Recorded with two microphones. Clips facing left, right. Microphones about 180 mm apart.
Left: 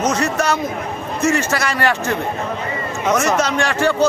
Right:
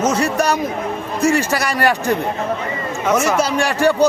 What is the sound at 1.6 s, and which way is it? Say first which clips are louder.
A man's voice: right 2 dB; 15° right (ahead or behind).